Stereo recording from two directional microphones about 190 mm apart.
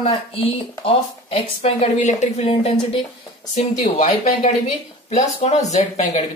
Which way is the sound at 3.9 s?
35° left (ahead or behind).